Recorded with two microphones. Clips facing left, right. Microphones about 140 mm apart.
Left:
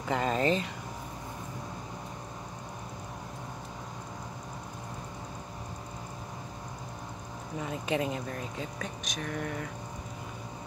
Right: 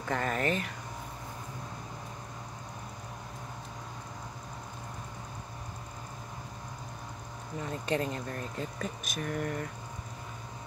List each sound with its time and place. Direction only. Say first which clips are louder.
0.1 s speech: left 3 dB; 20° left (ahead or behind)
7.6 s speech: left 1 dB; 5° left (ahead or behind)